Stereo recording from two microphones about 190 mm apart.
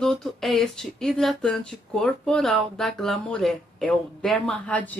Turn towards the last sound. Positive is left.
turn(degrees=5)  # may be behind; listen again after turning